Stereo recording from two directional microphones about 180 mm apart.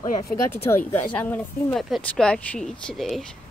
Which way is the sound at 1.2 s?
10° left (ahead or behind).